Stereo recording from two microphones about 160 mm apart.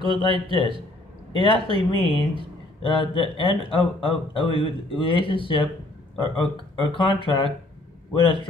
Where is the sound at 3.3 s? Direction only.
30° left (ahead or behind).